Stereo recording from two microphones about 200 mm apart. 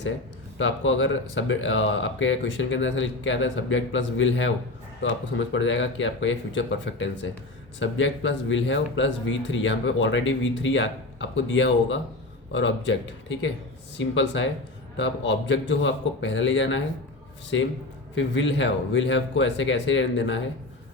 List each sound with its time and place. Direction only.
0.6 s a man's voice: 70° left (ahead or behind)